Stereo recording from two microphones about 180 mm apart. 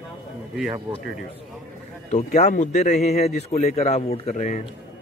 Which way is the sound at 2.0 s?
40° left (ahead or behind).